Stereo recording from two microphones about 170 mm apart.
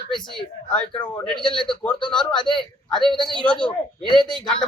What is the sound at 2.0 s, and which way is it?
Speech, 30° left (ahead or behind).